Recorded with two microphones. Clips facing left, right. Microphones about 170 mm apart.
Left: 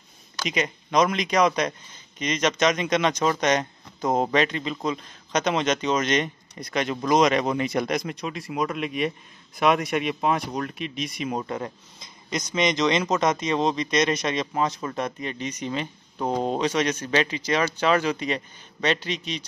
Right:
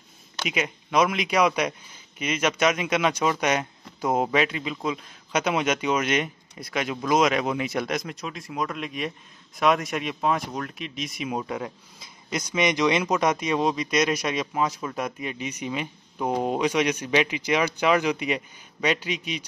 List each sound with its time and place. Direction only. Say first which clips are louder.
0.5 s speech: left 1 dB; 5° right (ahead or behind)